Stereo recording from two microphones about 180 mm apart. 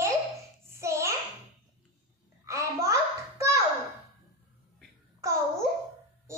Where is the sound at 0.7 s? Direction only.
15° right (ahead or behind).